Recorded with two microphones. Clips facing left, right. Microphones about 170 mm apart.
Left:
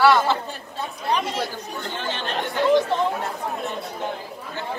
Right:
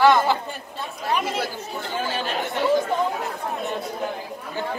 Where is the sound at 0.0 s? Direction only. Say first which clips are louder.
Even; 20° right (ahead or behind).